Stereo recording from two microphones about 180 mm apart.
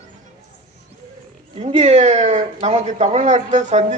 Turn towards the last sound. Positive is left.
turn(degrees=-40)  # may be behind; listen again after turning